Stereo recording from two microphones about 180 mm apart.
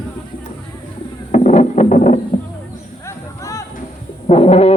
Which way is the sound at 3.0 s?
20° left (ahead or behind).